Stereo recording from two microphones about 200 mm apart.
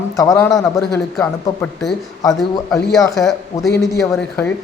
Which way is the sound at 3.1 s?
Centre (ahead or behind).